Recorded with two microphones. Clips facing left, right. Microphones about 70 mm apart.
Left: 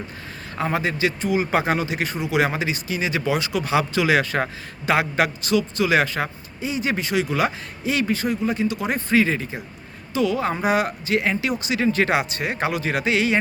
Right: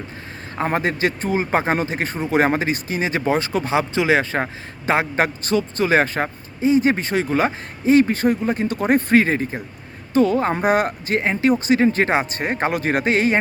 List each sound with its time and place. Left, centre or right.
0.7 s a man's voice: right